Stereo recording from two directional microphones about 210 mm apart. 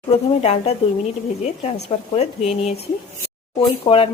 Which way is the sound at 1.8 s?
25° left (ahead or behind).